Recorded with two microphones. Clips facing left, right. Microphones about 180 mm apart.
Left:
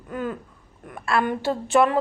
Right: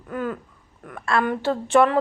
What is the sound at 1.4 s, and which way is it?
Speech, 15° left (ahead or behind).